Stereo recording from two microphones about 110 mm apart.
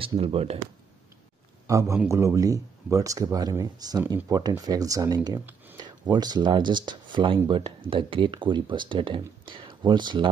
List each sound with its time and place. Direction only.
0.2 s speech: 65° right (ahead or behind)
1.7 s a man's voice: 30° right (ahead or behind); by 10.3 s 45° right (ahead or behind)